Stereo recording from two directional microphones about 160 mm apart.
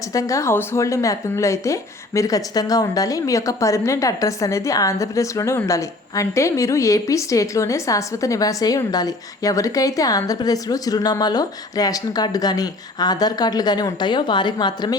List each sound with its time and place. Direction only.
0.1 s speech: 20° left (ahead or behind)